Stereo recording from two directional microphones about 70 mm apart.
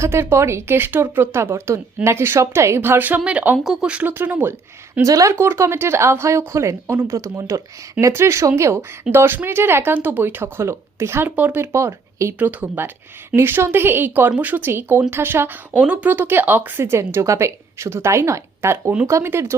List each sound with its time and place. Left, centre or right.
0.0 s speech: right
3.2 s speech: centre
3.6 s speech: centre
4.0 s speech: right
5.0 s speech: right
5.3 s speech: right
11.3 s speech: right
11.6 s speech: right
12.4 s speech: right
13.3 s speech: right